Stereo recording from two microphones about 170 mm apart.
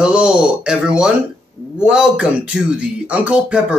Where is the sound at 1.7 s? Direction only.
5° right (ahead or behind).